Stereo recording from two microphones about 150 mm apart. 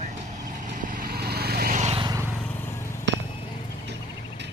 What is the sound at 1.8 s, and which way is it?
Vehicle, 45° right (ahead or behind).